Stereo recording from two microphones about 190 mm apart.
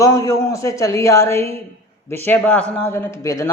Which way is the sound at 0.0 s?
15° left (ahead or behind).